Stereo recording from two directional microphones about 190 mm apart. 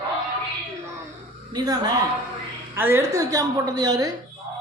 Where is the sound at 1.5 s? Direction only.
20° right (ahead or behind).